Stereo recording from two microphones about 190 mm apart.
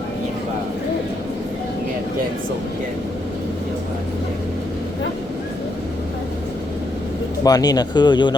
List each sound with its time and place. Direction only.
7.4 s speech: 20° left (ahead or behind)